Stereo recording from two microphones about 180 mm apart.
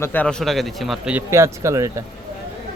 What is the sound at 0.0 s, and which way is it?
A man's voice, 10° left (ahead or behind).